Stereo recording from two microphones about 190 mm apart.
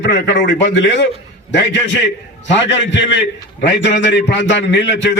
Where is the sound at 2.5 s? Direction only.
70° left (ahead or behind).